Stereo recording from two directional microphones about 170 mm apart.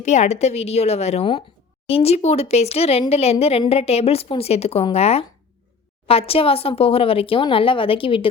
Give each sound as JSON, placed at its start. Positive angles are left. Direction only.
{"t": 0.0, "sound": "speech", "side_deg": 40}